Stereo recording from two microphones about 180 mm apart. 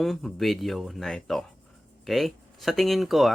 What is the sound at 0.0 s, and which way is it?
Speech, centre (ahead or behind).